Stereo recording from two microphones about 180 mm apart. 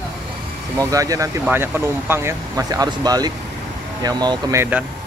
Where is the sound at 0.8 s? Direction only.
20° right (ahead or behind).